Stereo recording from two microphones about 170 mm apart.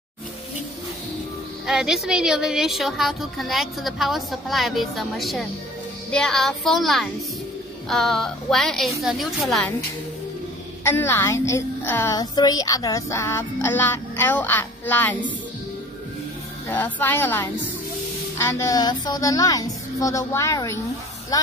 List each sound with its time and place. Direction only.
1.7 s a woman's voice: 5° right (ahead or behind)
10.8 s a woman's voice: 15° left (ahead or behind)
16.6 s a woman's voice: 10° left (ahead or behind)